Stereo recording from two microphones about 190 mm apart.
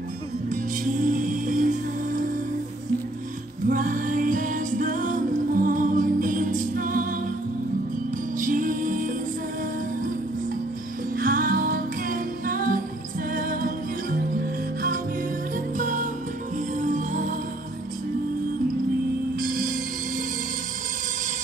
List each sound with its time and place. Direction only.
1.0 s music: 45° right (ahead or behind)
3.6 s music: 45° right (ahead or behind)
8.4 s music: 45° right (ahead or behind)
11.1 s music: 50° right (ahead or behind)
15.5 s music: 45° right (ahead or behind)
19.4 s music: 45° right (ahead or behind)